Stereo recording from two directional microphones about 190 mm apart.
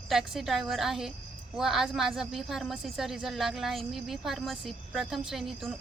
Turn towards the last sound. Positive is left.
turn(degrees=0)  # may be behind; listen again after turning